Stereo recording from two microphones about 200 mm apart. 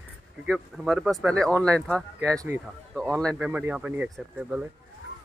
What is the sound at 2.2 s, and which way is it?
Speech, 15° right (ahead or behind).